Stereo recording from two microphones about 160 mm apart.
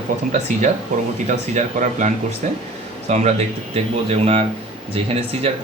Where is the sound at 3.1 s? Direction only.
45° right (ahead or behind).